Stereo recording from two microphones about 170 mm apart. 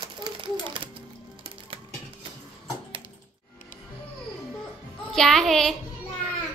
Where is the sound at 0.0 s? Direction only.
30° right (ahead or behind).